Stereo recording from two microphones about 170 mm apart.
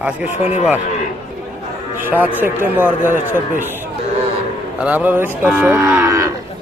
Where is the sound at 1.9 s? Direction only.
10° right (ahead or behind).